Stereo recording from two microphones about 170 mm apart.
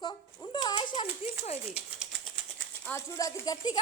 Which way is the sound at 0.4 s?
25° left (ahead or behind).